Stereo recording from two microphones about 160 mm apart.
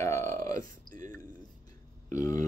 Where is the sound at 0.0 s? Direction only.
15° left (ahead or behind).